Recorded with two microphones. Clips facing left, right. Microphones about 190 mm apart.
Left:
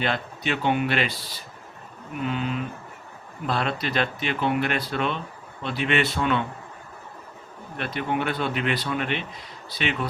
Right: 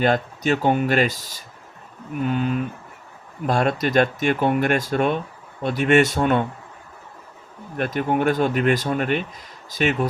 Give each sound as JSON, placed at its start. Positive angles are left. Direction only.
{"t": 0.0, "sound": "speech", "side_deg": -45}
{"t": 7.8, "sound": "speech", "side_deg": -45}